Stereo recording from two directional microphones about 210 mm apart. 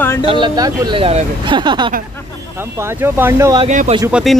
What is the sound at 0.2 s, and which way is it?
Speech, 25° right (ahead or behind).